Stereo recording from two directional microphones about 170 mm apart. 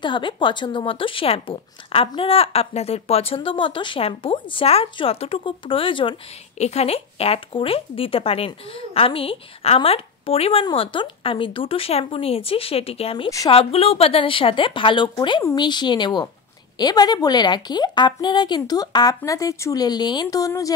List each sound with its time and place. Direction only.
0.0 s a woman's voice: 30° left (ahead or behind)